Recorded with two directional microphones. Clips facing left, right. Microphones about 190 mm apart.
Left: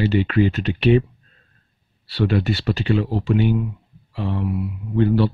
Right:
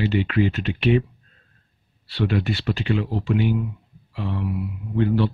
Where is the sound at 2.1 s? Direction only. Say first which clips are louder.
Left 3 dB; 40° left (ahead or behind).